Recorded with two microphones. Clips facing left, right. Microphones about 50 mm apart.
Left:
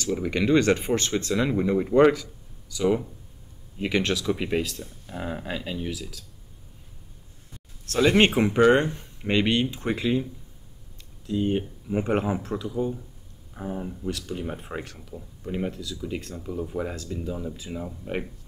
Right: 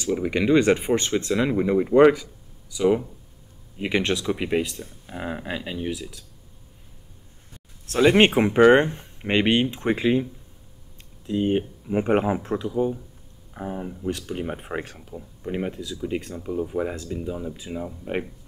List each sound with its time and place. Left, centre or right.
0.0 s speech: centre
7.8 s speech: centre
8.5 s speech: right
11.2 s speech: right